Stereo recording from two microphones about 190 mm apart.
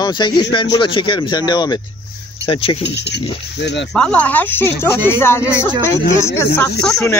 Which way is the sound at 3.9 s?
5° left (ahead or behind).